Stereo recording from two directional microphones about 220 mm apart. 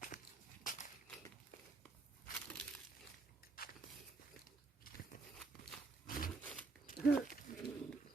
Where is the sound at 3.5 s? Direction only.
40° left (ahead or behind).